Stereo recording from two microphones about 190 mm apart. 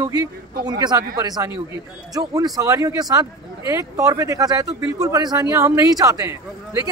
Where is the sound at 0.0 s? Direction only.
20° right (ahead or behind).